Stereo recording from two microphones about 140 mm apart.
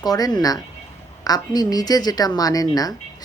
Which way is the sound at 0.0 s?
30° left (ahead or behind).